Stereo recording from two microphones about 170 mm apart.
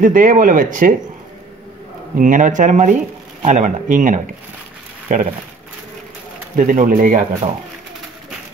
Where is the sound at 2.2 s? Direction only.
50° right (ahead or behind).